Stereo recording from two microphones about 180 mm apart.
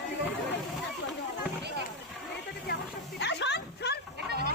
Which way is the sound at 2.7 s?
70° left (ahead or behind).